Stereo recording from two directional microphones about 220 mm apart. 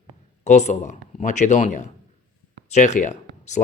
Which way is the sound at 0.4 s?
30° left (ahead or behind).